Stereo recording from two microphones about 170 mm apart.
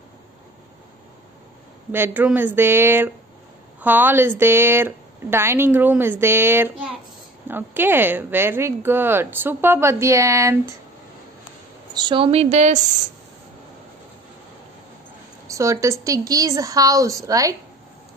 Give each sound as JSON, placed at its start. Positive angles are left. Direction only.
{"t": 1.9, "sound": "speech", "side_deg": -10}
{"t": 11.9, "sound": "a woman's voice", "side_deg": -25}
{"t": 15.4, "sound": "a woman's voice", "side_deg": -20}